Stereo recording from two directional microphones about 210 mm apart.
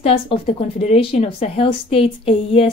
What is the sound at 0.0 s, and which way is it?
Speech, 25° left (ahead or behind).